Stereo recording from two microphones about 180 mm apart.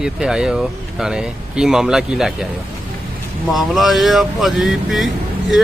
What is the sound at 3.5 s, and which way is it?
Speech, centre (ahead or behind).